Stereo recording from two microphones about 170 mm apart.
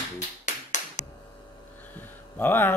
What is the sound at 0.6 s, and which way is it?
Finger snapping, 45° left (ahead or behind).